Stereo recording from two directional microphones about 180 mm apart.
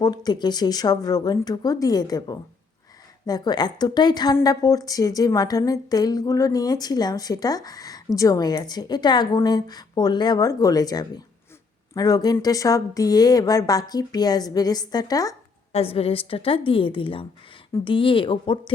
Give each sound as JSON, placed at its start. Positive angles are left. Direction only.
{"t": 0.3, "sound": "a woman's voice", "side_deg": 25}
{"t": 15.7, "sound": "a woman's voice", "side_deg": 35}